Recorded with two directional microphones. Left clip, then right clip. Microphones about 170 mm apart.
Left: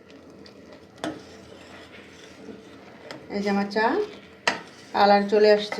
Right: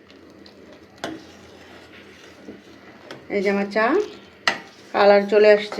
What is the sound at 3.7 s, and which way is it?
Speech, 30° right (ahead or behind).